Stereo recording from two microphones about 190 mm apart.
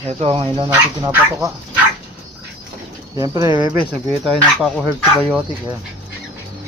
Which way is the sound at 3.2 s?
20° right (ahead or behind).